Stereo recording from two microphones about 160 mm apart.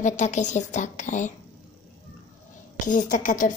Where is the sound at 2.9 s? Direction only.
55° left (ahead or behind).